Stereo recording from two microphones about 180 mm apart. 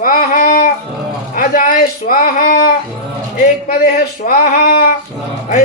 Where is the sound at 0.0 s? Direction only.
50° left (ahead or behind).